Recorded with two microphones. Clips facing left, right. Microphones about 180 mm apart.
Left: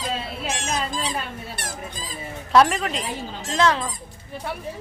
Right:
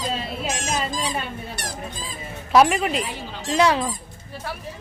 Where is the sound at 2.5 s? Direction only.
10° right (ahead or behind).